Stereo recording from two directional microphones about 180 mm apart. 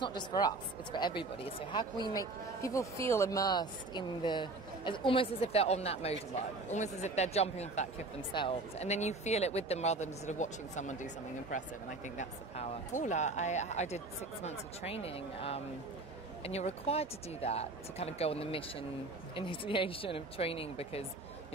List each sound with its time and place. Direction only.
0.0 s speech: 25° left (ahead or behind); by 11.1 s 45° left (ahead or behind)
12.2 s speech: 40° left (ahead or behind)